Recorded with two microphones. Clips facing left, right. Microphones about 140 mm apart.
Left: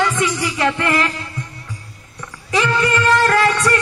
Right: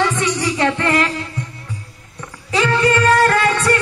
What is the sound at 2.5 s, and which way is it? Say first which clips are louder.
Music: right 2 dB; 35° right (ahead or behind).